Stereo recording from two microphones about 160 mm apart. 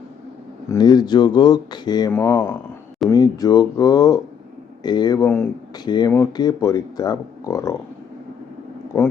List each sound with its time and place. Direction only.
0.7 s speech: 25° left (ahead or behind)
5.8 s speech: 25° left (ahead or behind)